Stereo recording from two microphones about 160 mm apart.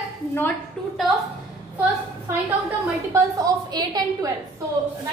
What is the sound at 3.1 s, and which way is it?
A woman's voice, 20° right (ahead or behind).